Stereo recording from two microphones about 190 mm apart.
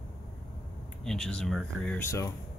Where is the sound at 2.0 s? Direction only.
15° left (ahead or behind).